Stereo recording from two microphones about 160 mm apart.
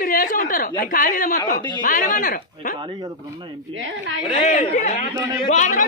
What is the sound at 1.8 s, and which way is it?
Speech, 55° left (ahead or behind).